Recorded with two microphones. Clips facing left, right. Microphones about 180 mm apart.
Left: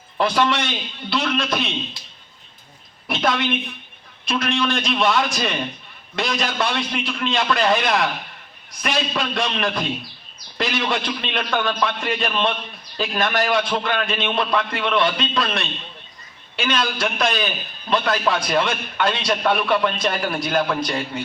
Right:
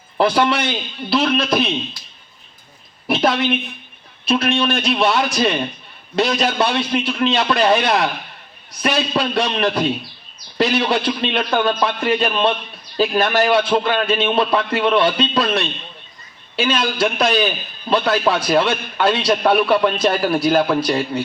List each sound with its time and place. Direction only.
0.2 s a man's voice: 30° right (ahead or behind)
3.2 s a man's voice: 30° right (ahead or behind)